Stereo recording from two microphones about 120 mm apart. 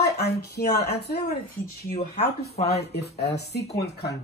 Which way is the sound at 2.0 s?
60° left (ahead or behind).